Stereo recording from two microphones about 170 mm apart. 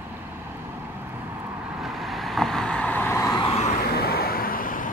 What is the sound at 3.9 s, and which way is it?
Vehicle, 65° left (ahead or behind).